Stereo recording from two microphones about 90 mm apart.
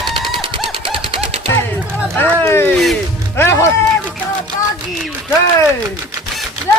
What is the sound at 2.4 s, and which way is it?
Speech, 30° left (ahead or behind).